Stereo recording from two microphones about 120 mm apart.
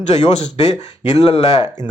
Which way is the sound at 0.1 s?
75° left (ahead or behind).